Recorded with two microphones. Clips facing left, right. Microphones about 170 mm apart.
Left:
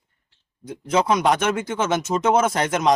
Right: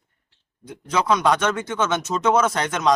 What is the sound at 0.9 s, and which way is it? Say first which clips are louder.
A man's voice: left 1 dB; 25° left (ahead or behind).